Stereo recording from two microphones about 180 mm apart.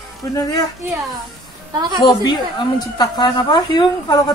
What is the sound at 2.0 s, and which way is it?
A woman's voice, 25° left (ahead or behind).